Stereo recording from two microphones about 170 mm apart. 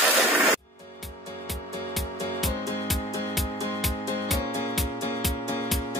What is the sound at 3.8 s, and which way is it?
Music, centre (ahead or behind).